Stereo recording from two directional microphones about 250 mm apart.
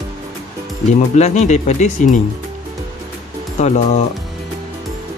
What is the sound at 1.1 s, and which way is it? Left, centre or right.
Speech, left.